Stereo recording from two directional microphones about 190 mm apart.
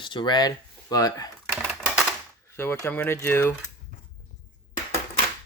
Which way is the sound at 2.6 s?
10° left (ahead or behind).